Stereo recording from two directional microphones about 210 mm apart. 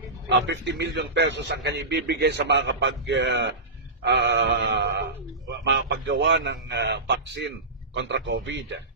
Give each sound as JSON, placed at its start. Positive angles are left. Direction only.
{"t": 0.3, "sound": "a man's voice", "side_deg": -55}